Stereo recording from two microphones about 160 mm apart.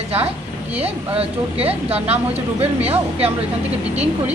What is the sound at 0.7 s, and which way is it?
A woman's voice, 40° right (ahead or behind).